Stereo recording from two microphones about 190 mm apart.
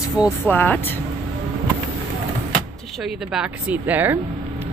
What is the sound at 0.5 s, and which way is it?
Speech, 10° left (ahead or behind).